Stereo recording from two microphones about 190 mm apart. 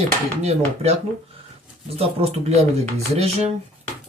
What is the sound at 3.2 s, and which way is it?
Speech, 35° right (ahead or behind).